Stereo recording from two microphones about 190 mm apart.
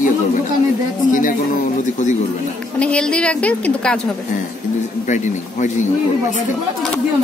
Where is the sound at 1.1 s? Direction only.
45° left (ahead or behind).